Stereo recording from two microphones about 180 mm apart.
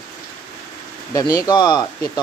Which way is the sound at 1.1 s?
20° left (ahead or behind).